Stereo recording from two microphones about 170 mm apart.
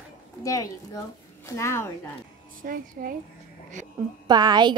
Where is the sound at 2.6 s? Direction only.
55° right (ahead or behind).